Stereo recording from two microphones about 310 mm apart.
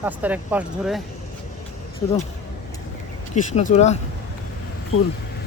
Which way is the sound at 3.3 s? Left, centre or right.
Left.